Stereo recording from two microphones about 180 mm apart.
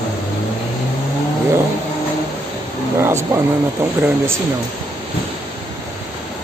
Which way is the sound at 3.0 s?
15° right (ahead or behind).